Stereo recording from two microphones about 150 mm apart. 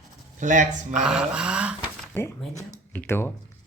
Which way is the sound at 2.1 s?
15° left (ahead or behind).